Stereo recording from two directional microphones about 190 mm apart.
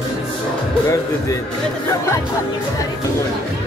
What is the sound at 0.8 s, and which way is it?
Speech, 15° left (ahead or behind).